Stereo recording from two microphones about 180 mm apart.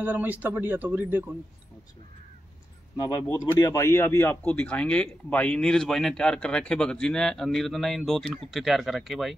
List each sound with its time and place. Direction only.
0.0 s speech: 10° right (ahead or behind)
3.0 s speech: 20° left (ahead or behind); by 9.3 s centre (ahead or behind)